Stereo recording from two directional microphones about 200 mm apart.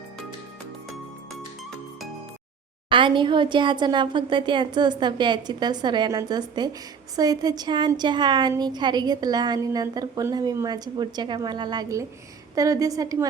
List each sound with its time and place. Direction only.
2.9 s a woman's voice: 25° right (ahead or behind)